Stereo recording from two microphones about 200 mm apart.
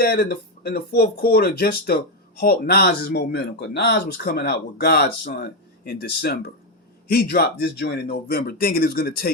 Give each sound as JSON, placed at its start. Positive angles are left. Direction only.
{"t": 0.0, "sound": "speech", "side_deg": 45}